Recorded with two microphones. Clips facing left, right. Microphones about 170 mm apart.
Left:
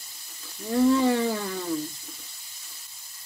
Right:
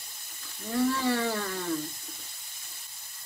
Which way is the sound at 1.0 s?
20° left (ahead or behind).